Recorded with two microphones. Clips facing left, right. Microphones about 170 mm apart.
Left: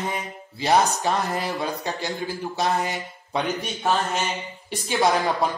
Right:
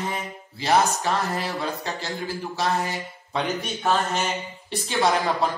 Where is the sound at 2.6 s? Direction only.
15° left (ahead or behind).